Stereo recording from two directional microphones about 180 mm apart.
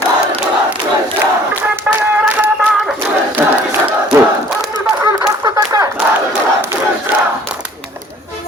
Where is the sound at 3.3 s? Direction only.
10° right (ahead or behind).